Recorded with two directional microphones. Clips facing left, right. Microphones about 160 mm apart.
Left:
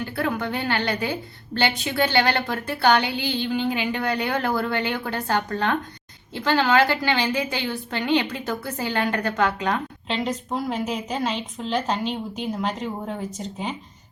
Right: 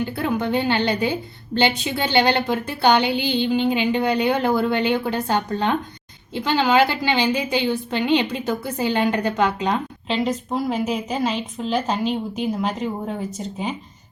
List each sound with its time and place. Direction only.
0.0 s a woman's voice: 20° right (ahead or behind)
10.1 s a woman's voice: 5° right (ahead or behind)